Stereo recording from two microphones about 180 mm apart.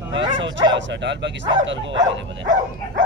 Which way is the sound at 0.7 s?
75° right (ahead or behind).